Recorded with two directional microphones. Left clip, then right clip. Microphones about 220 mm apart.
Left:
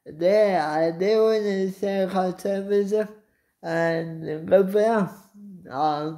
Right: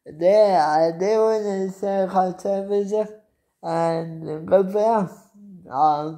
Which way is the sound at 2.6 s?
45° left (ahead or behind).